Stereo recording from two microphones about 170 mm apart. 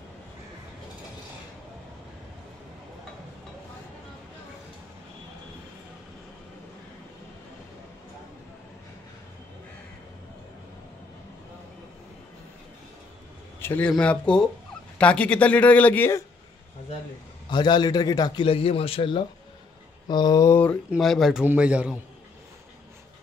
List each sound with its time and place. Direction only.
13.6 s a man's voice: 10° left (ahead or behind)
17.5 s a man's voice: 25° left (ahead or behind)
20.9 s a man's voice: centre (ahead or behind)